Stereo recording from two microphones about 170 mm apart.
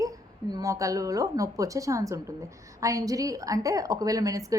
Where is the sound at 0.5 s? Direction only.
20° right (ahead or behind).